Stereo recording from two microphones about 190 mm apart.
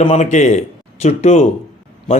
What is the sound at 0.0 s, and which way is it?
A man's voice, 35° left (ahead or behind).